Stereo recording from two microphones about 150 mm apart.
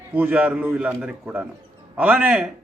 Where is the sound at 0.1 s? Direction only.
10° right (ahead or behind).